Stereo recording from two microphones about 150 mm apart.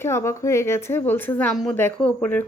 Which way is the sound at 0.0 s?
15° left (ahead or behind).